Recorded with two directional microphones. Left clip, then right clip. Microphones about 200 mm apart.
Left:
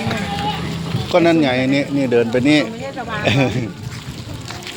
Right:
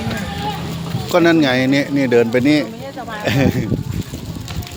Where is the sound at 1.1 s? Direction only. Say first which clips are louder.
Right 1 dB; 15° right (ahead or behind).